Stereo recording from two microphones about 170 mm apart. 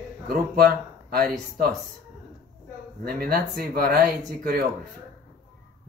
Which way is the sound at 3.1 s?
65° right (ahead or behind).